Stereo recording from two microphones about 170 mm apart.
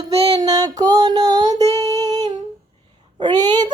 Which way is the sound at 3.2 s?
25° right (ahead or behind).